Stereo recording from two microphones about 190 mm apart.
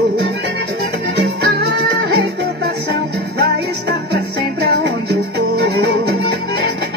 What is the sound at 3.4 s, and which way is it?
Music, 60° right (ahead or behind).